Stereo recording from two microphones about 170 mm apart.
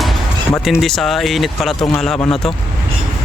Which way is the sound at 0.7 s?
Centre (ahead or behind).